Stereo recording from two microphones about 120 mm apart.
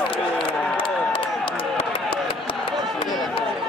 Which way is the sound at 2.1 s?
45° left (ahead or behind).